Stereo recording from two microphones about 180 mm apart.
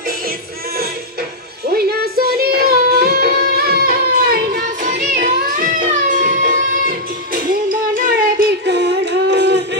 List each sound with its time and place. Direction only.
1.7 s child singing: 60° right (ahead or behind)
7.6 s child singing: 50° right (ahead or behind)
8.6 s a sound: 70° right (ahead or behind)